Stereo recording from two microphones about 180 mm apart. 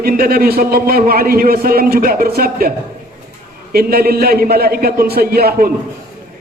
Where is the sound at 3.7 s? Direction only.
55° right (ahead or behind).